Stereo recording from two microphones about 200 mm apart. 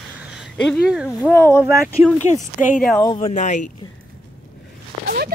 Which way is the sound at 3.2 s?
35° left (ahead or behind).